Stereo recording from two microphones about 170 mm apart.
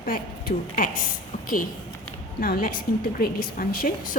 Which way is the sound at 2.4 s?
60° left (ahead or behind).